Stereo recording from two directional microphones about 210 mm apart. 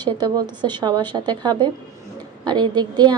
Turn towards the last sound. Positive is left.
turn(degrees=-20)  # may be behind; listen again after turning